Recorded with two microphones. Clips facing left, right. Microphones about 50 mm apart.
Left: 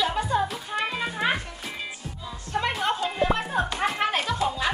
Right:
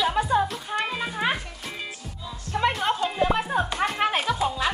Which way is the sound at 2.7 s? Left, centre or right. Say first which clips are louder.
Right 1 dB; centre.